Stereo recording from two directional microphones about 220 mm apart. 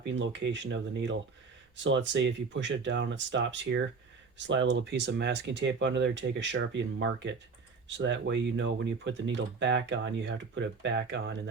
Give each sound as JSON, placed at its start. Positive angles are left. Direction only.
{"t": 0.0, "sound": "speech", "side_deg": -55}